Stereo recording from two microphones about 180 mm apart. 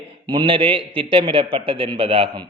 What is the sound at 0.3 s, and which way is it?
A man's voice, 25° right (ahead or behind).